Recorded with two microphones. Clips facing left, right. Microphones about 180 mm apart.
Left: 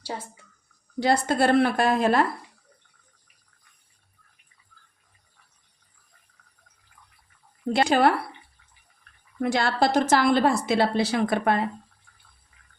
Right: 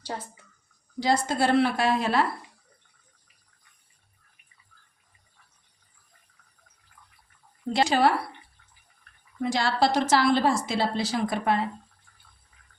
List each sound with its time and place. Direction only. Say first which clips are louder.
0.9 s a woman's voice: left 3 dB; 60° left (ahead or behind)
7.7 s a woman's voice: left 2 dB; 55° left (ahead or behind)
9.4 s a woman's voice: left 1 dB; 55° left (ahead or behind)